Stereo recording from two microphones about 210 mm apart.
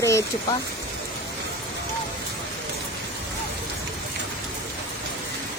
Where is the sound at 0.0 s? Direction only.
15° left (ahead or behind).